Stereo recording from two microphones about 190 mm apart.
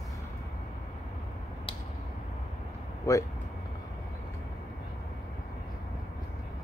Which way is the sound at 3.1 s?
15° left (ahead or behind).